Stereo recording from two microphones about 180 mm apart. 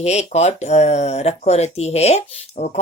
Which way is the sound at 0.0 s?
35° left (ahead or behind).